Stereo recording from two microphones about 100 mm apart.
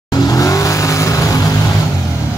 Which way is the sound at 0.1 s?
35° left (ahead or behind).